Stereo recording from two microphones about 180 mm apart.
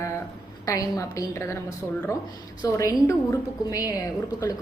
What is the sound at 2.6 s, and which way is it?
A woman's voice, 20° left (ahead or behind).